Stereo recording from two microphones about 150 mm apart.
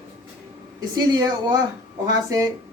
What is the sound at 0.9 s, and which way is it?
Speech, 30° right (ahead or behind).